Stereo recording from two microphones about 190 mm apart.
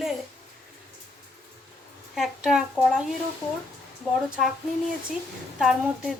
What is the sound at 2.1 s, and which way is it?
Speech, centre (ahead or behind).